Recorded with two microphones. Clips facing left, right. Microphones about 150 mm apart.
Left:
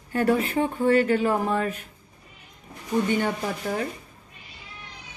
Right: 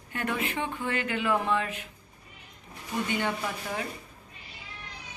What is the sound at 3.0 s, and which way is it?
Speech, 40° left (ahead or behind).